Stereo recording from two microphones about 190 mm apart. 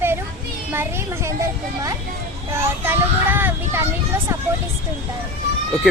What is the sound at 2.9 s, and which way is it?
Speech, 10° right (ahead or behind).